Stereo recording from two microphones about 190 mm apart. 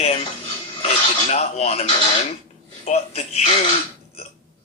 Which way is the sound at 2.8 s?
35° left (ahead or behind).